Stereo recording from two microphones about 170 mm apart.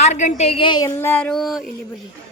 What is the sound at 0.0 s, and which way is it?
Speech, 45° left (ahead or behind).